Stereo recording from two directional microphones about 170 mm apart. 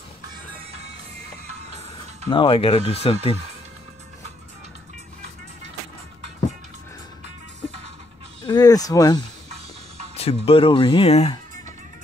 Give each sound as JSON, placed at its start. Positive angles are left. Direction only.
{"t": 2.2, "sound": "speech", "side_deg": 30}
{"t": 8.5, "sound": "speech", "side_deg": 20}
{"t": 10.1, "sound": "speech", "side_deg": 35}